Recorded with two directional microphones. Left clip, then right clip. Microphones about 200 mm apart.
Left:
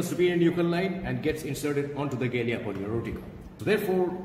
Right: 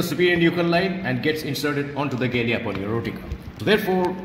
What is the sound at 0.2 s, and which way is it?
A man's voice, 40° right (ahead or behind).